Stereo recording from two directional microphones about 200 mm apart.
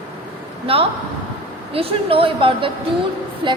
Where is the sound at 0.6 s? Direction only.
30° right (ahead or behind).